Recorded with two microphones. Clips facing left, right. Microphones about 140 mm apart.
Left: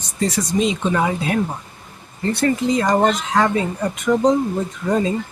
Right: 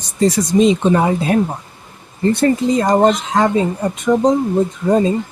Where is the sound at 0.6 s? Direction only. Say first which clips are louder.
Right 6 dB; 35° right (ahead or behind).